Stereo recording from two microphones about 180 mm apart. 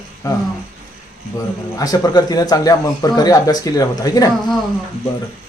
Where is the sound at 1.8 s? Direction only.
20° left (ahead or behind).